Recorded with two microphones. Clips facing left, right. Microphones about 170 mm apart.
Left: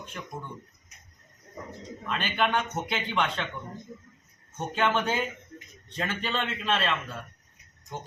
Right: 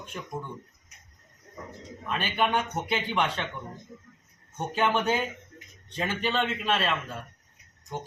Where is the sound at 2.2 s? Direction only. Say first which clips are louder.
Right 1 dB; 10° right (ahead or behind).